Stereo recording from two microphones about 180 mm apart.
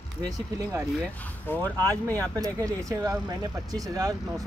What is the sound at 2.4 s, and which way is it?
Speech, 20° right (ahead or behind).